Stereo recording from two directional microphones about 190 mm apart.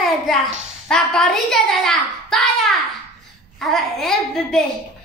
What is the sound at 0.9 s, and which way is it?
A child's voice, 5° left (ahead or behind).